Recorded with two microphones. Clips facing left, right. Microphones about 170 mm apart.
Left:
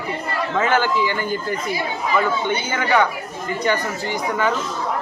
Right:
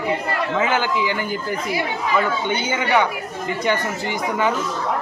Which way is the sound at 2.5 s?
15° right (ahead or behind).